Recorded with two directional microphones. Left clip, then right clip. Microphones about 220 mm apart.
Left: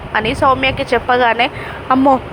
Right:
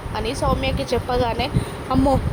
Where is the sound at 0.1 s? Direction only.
10° left (ahead or behind).